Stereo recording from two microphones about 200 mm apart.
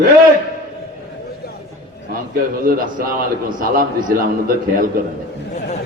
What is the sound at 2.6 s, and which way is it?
A man's voice, 45° right (ahead or behind).